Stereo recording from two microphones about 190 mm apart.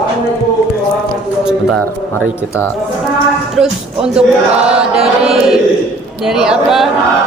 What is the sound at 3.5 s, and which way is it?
Speech, 5° right (ahead or behind).